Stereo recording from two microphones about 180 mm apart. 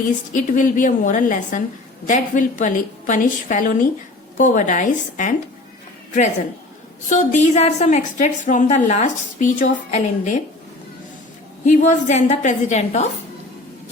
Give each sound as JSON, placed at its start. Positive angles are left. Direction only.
{"t": 0.3, "sound": "a woman's voice", "side_deg": 50}
{"t": 7.1, "sound": "a woman's voice", "side_deg": 40}
{"t": 11.6, "sound": "a woman's voice", "side_deg": 45}